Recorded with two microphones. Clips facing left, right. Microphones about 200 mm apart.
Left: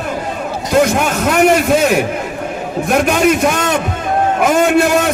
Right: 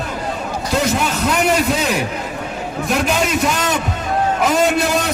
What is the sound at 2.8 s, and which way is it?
A man's voice, 55° left (ahead or behind).